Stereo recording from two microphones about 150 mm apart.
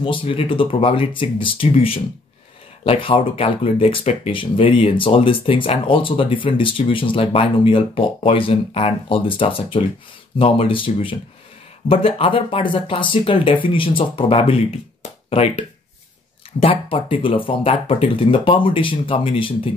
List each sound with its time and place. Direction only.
0.0 s speech: 35° left (ahead or behind)